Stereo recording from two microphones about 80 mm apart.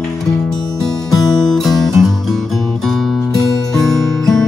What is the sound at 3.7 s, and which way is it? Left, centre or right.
Music, centre.